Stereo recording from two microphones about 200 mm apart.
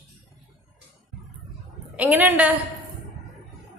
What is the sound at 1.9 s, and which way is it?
Speech, 10° right (ahead or behind).